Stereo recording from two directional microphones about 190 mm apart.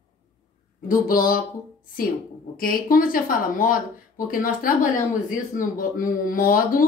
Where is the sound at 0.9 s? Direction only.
45° left (ahead or behind).